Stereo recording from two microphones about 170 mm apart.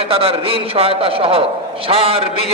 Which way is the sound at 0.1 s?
35° right (ahead or behind).